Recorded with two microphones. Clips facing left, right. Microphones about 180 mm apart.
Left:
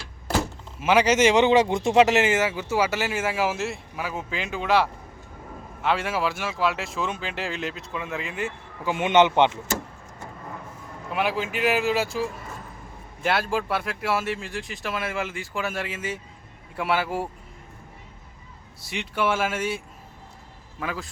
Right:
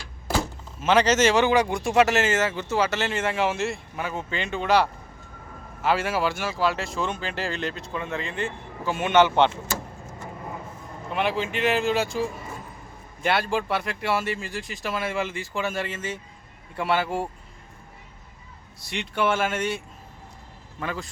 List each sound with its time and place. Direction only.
0.8 s speech: 10° left (ahead or behind)
8.9 s speech: 20° left (ahead or behind)
11.1 s speech: 5° left (ahead or behind)
18.8 s speech: 5° left (ahead or behind)